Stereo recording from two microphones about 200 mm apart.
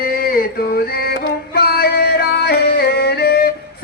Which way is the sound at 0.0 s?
45° left (ahead or behind).